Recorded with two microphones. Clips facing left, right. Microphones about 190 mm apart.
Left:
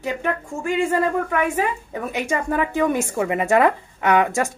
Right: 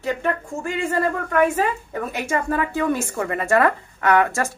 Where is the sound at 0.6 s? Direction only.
15° left (ahead or behind).